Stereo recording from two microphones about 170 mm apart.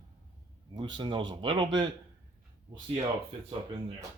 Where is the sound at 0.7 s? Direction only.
25° right (ahead or behind).